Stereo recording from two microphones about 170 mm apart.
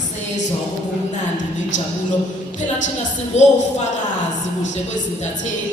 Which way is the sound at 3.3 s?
45° left (ahead or behind).